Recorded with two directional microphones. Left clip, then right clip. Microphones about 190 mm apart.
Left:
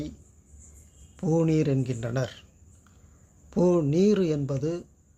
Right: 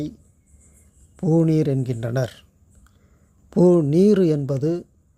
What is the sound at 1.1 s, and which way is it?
Speech, 30° right (ahead or behind).